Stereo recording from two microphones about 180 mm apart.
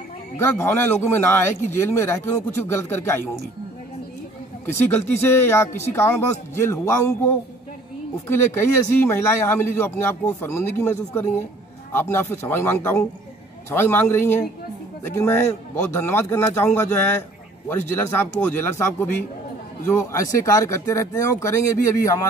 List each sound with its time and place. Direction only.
0.4 s a man's voice: 15° left (ahead or behind)
4.7 s a man's voice: 10° left (ahead or behind)
8.5 s a man's voice: 15° left (ahead or behind)